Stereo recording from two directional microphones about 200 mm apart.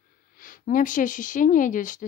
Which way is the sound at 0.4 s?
45° left (ahead or behind).